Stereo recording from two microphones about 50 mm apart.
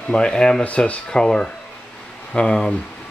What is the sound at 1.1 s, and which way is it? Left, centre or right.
Speech, centre.